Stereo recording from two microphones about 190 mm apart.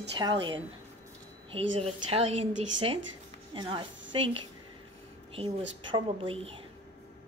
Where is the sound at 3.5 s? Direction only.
25° right (ahead or behind).